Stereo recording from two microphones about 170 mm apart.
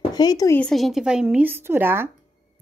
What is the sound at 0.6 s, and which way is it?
Speech, centre (ahead or behind).